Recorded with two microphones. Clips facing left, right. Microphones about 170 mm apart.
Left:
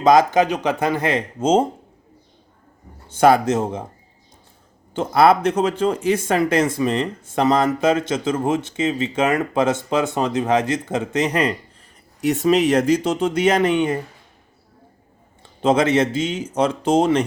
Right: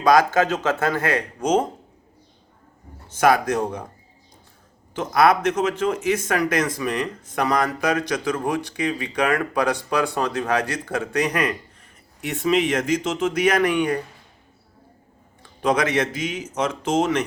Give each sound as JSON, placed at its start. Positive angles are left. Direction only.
{"t": 0.0, "sound": "speech", "side_deg": 20}
{"t": 3.1, "sound": "speech", "side_deg": 30}
{"t": 4.9, "sound": "speech", "side_deg": 30}
{"t": 12.2, "sound": "speech", "side_deg": 40}
{"t": 15.6, "sound": "speech", "side_deg": 25}